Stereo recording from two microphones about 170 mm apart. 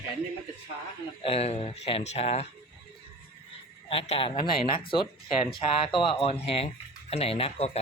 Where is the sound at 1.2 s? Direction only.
35° left (ahead or behind).